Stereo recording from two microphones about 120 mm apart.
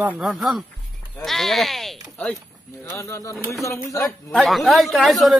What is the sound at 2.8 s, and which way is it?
Speech, 25° left (ahead or behind).